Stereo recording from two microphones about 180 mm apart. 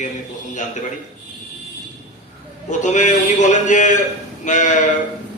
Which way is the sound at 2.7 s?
40° left (ahead or behind).